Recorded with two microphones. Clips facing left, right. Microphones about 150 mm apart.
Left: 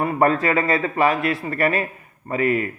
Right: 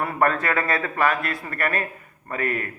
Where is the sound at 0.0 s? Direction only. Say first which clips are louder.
Left 4 dB; 25° left (ahead or behind).